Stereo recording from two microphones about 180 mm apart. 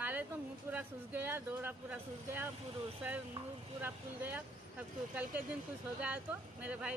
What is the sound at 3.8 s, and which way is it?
Speech, 10° right (ahead or behind).